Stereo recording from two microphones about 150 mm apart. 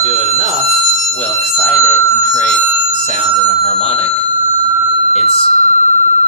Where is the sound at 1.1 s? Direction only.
5° left (ahead or behind).